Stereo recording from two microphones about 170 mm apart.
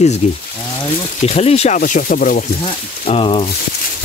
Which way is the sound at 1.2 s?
40° left (ahead or behind).